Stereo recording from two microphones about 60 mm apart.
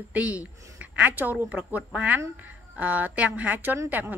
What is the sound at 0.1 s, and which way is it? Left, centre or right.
Speech, right.